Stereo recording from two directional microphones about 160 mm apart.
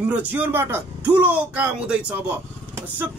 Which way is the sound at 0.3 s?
10° right (ahead or behind).